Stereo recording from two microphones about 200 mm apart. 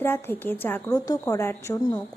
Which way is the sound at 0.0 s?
10° left (ahead or behind).